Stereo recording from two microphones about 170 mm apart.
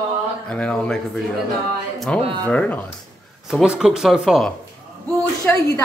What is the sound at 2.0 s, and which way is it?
Speech, 5° left (ahead or behind).